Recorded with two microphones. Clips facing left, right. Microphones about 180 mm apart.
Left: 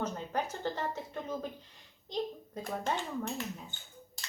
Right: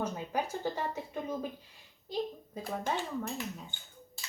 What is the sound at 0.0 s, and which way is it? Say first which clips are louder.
A woman's voice: right 1 dB; 10° right (ahead or behind).